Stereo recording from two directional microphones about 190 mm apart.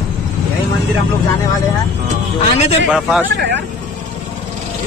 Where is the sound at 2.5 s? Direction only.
35° left (ahead or behind).